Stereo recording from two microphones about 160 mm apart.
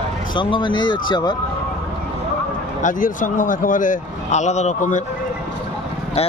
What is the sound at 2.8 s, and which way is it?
Speech, 55° left (ahead or behind).